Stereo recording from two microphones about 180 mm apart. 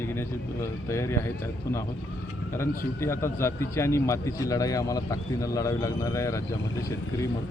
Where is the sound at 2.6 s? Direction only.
15° left (ahead or behind).